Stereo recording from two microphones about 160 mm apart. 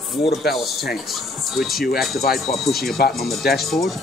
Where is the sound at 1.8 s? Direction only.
70° left (ahead or behind).